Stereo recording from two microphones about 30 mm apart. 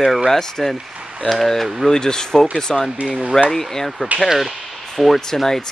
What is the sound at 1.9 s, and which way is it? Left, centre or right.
Speech, left.